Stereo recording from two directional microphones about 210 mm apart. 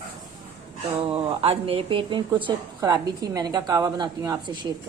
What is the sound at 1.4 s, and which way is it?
A woman's voice, 25° right (ahead or behind).